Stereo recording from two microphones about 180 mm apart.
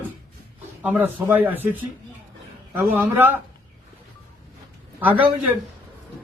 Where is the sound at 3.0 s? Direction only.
10° right (ahead or behind).